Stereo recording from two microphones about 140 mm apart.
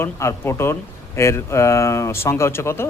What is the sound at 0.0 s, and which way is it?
Speech, 20° left (ahead or behind).